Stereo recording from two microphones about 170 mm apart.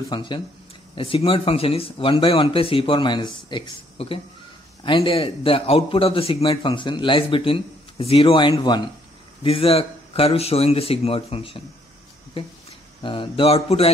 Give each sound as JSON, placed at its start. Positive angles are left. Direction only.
{"t": 0.1, "sound": "a man's voice", "side_deg": 30}
{"t": 13.0, "sound": "a man's voice", "side_deg": 30}